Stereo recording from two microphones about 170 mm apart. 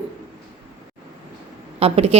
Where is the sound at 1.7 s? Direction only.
35° right (ahead or behind).